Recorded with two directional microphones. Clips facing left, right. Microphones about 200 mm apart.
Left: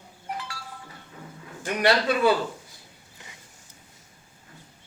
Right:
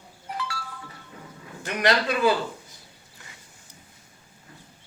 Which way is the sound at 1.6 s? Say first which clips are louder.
Left 1 dB; 5° left (ahead or behind).